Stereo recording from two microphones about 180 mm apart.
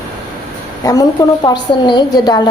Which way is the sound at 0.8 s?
20° left (ahead or behind).